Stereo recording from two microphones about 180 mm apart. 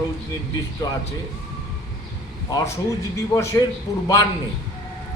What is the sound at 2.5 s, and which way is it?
A man's voice, 20° left (ahead or behind).